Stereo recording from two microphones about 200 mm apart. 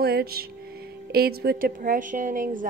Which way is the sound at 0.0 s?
50° right (ahead or behind).